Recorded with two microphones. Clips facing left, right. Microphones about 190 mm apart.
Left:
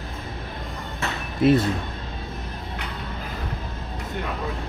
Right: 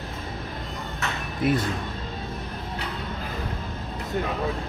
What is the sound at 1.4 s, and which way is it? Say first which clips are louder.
Speech: left 6 dB; 25° left (ahead or behind).